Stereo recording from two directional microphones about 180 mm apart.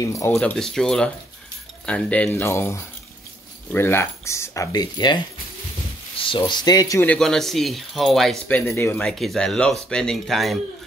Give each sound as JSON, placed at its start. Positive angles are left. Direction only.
{"t": 0.0, "sound": "speech", "side_deg": 15}
{"t": 0.4, "sound": "speech", "side_deg": 5}